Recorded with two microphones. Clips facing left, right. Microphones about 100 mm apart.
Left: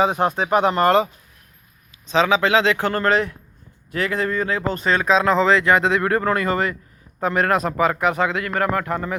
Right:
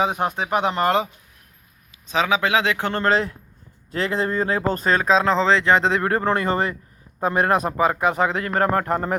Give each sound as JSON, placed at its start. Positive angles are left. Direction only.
{"t": 0.3, "sound": "a man's voice", "side_deg": -15}